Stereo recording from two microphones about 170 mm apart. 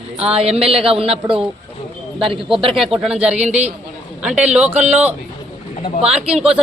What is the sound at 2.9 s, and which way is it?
Speech, 5° right (ahead or behind).